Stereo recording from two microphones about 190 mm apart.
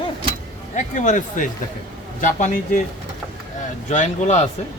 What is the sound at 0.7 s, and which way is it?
A man's voice, 40° left (ahead or behind).